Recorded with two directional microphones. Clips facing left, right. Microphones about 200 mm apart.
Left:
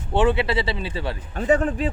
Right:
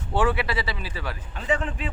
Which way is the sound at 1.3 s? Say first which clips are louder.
Left 7 dB; 45° left (ahead or behind).